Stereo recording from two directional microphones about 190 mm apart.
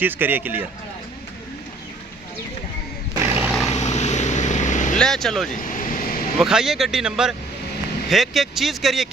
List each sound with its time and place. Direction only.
0.0 s speech: 10° right (ahead or behind)
3.3 s vehicle: 5° right (ahead or behind)
3.7 s vehicle: 35° left (ahead or behind)
4.9 s speech: centre (ahead or behind)
5.5 s vehicle: 45° left (ahead or behind)
6.4 s speech: centre (ahead or behind)